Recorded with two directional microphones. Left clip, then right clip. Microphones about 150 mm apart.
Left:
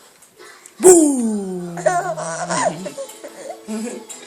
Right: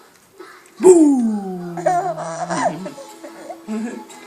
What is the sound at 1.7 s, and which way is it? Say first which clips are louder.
Laughter: even; 25° left (ahead or behind).